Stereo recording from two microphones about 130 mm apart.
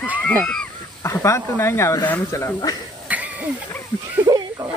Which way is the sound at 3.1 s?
10° right (ahead or behind).